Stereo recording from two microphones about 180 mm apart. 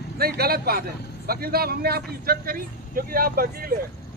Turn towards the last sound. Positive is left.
turn(degrees=-55)  # may be behind; listen again after turning